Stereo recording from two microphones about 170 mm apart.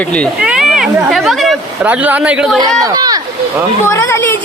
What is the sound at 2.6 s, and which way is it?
Speech, 20° right (ahead or behind).